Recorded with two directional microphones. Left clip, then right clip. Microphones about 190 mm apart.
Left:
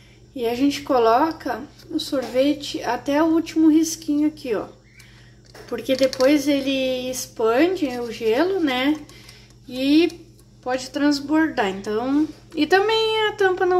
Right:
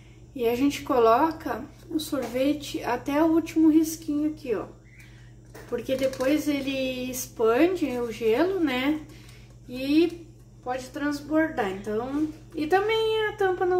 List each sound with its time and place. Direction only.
0.4 s a woman's voice: 15° left (ahead or behind)
5.7 s a woman's voice: 30° left (ahead or behind)